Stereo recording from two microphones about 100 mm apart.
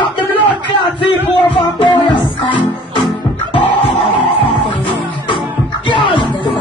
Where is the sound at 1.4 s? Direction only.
55° left (ahead or behind).